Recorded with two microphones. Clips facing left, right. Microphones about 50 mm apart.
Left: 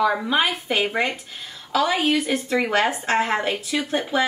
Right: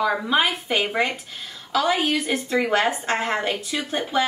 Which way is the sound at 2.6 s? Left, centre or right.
Centre.